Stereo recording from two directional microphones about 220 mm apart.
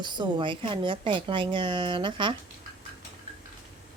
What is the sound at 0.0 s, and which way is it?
A woman's voice, 20° right (ahead or behind).